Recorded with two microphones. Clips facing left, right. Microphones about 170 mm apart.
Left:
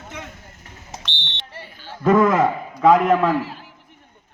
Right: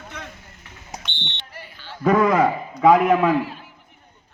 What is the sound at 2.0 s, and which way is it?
A man's voice, 10° right (ahead or behind).